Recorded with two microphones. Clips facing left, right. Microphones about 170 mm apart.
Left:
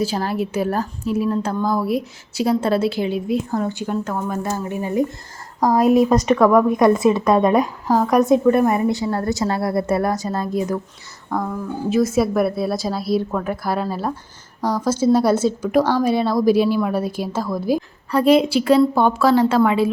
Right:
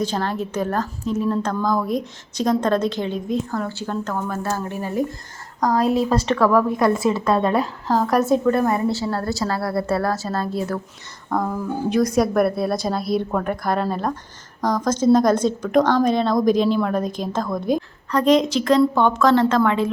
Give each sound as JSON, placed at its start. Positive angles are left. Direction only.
{"t": 0.0, "sound": "a woman's voice", "side_deg": 10}
{"t": 11.3, "sound": "a woman's voice", "side_deg": 0}